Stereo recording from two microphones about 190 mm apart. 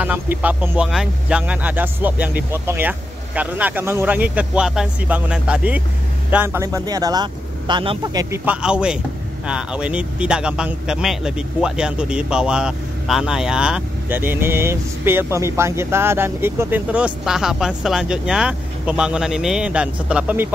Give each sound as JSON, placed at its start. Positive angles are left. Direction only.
{"t": 0.0, "sound": "speech", "side_deg": -10}
{"t": 8.5, "sound": "speech", "side_deg": -5}